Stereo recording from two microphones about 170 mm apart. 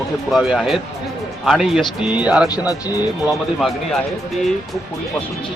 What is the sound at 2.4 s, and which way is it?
Speech, 20° left (ahead or behind).